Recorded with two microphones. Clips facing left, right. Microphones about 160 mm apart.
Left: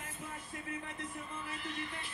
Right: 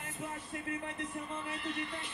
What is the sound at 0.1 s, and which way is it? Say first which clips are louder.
Music: right 8 dB; 65° right (ahead or behind).